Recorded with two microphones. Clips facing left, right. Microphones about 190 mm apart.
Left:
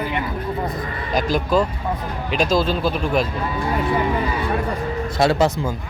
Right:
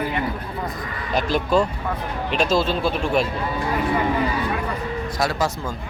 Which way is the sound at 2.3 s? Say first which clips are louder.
Left 1 dB; centre (ahead or behind).